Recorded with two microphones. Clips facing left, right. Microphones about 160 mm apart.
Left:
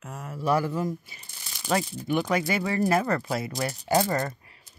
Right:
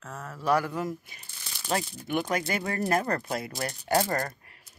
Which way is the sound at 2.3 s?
45° right (ahead or behind).